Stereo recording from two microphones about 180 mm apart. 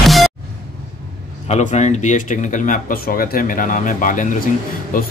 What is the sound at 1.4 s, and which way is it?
Speech, 40° left (ahead or behind).